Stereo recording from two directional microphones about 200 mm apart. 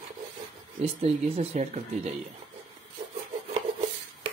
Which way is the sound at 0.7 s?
30° right (ahead or behind).